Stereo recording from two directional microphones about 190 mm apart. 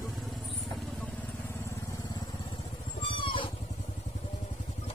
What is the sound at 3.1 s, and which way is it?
Vehicle, 25° left (ahead or behind).